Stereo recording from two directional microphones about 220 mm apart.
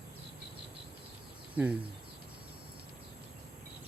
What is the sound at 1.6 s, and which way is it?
Speech, 5° right (ahead or behind).